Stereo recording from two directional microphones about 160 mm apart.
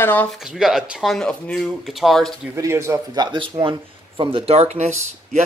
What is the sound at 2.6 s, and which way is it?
Speech, 20° right (ahead or behind).